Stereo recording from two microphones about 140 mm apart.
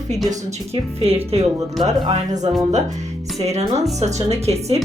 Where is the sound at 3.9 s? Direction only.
55° right (ahead or behind).